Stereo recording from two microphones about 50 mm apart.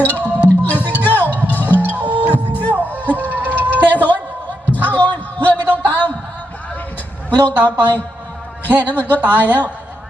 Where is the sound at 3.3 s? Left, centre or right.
Left.